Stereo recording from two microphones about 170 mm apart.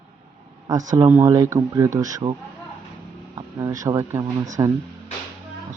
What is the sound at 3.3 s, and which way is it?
Speech, 20° right (ahead or behind).